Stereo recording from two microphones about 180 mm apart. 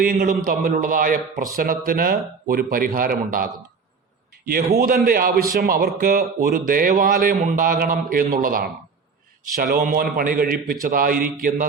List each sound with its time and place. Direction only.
0.0 s a man's voice: 50° right (ahead or behind)